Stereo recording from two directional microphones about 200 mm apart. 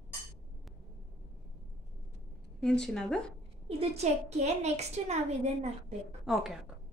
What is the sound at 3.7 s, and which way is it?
A woman's voice, 30° right (ahead or behind).